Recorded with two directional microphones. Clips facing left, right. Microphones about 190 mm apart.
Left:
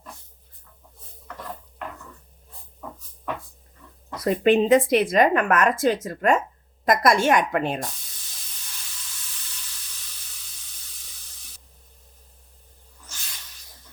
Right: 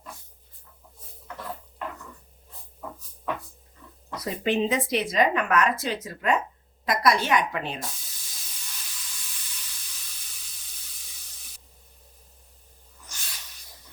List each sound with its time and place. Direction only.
4.2 s speech: 55° left (ahead or behind)